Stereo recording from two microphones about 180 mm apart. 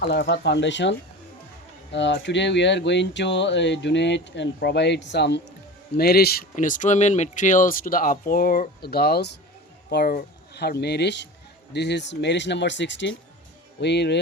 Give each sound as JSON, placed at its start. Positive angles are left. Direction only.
{"t": 0.1, "sound": "speech", "side_deg": 70}
{"t": 6.0, "sound": "speech", "side_deg": 60}